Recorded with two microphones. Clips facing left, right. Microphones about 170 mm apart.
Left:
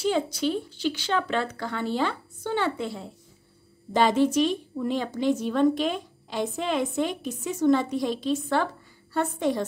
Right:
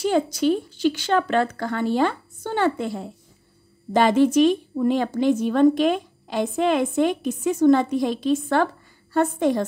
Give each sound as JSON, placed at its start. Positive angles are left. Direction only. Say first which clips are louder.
{"t": 0.0, "sound": "a woman's voice", "louder": "right 5 dB", "side_deg": -45}